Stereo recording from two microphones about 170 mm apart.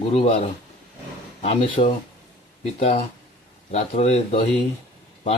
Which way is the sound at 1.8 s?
45° left (ahead or behind).